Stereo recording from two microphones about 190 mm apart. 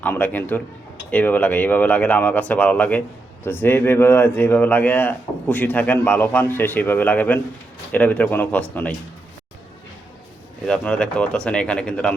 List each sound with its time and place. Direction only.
0.0 s a man's voice: 10° left (ahead or behind)
10.7 s speech: 5° left (ahead or behind)